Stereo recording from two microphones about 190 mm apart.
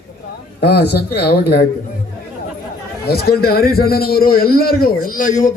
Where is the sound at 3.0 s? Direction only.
55° left (ahead or behind).